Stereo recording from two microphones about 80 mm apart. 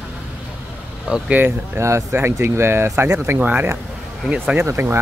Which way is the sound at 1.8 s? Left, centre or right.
Right.